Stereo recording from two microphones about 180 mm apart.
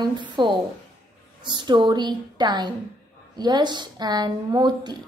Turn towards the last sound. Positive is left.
turn(degrees=-25)  # may be behind; listen again after turning